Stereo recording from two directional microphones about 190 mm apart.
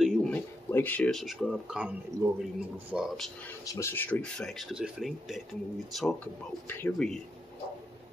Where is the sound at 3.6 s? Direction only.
15° left (ahead or behind).